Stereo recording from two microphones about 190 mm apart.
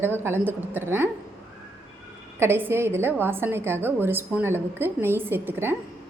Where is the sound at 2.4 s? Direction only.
10° right (ahead or behind).